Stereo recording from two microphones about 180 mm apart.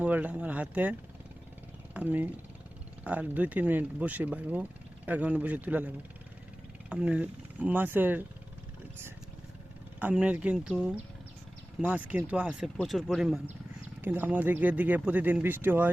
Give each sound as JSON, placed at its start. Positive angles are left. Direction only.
{"t": 0.0, "sound": "speech", "side_deg": -10}
{"t": 6.9, "sound": "speech", "side_deg": -5}
{"t": 10.0, "sound": "speech", "side_deg": -5}